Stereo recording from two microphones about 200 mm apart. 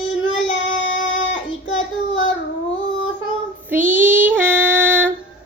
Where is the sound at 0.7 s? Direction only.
70° left (ahead or behind).